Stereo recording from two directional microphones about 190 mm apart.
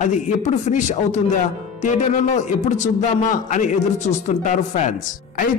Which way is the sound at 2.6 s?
40° left (ahead or behind).